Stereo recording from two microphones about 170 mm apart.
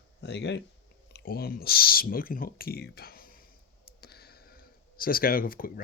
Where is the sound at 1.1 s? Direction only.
65° left (ahead or behind).